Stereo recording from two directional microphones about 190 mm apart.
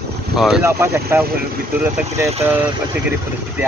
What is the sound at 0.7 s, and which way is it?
Speech, 15° right (ahead or behind).